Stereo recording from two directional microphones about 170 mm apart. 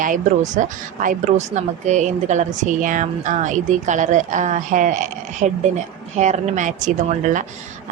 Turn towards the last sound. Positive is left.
turn(degrees=-50)  # may be behind; listen again after turning